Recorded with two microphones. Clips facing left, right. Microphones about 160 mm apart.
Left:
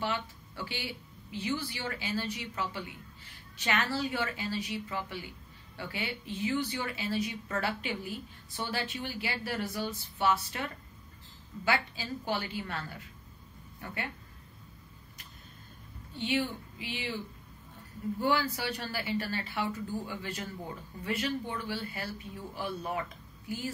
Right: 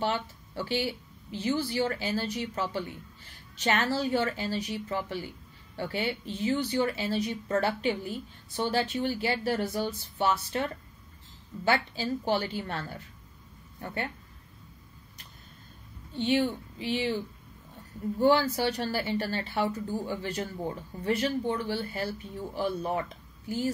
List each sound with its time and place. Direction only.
0.0 s a woman's voice: 35° right (ahead or behind)
11.6 s a woman's voice: 35° right (ahead or behind)
16.3 s a woman's voice: 30° right (ahead or behind)
18.2 s a woman's voice: 30° right (ahead or behind)